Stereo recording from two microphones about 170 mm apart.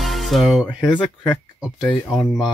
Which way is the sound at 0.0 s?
Centre (ahead or behind).